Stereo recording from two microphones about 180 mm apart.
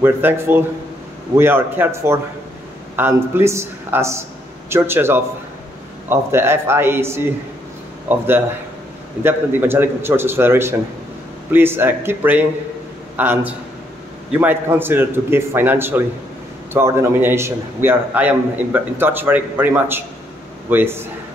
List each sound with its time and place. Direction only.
0.0 s a man's voice: 10° right (ahead or behind)
9.2 s a man's voice: 10° right (ahead or behind)